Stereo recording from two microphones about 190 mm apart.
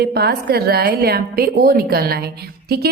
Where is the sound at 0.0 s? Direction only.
55° right (ahead or behind).